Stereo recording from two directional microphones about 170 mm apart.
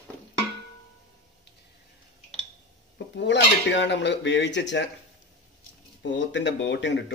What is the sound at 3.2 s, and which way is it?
Speech, 90° left.